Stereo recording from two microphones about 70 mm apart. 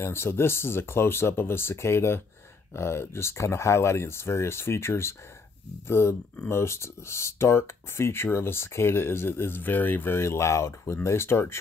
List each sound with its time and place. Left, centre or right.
0.0 s speech: left